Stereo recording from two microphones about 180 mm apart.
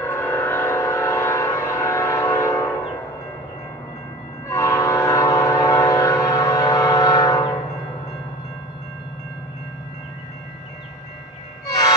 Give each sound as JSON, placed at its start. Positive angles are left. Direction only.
{"t": 0.0, "sound": "train", "side_deg": 15}
{"t": 4.6, "sound": "train", "side_deg": 15}